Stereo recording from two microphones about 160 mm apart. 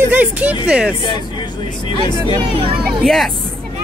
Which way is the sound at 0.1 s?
10° right (ahead or behind).